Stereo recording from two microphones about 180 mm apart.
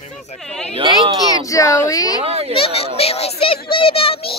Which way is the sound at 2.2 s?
35° right (ahead or behind).